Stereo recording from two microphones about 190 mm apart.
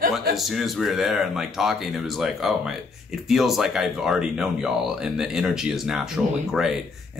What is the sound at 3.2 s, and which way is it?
Speech, centre (ahead or behind).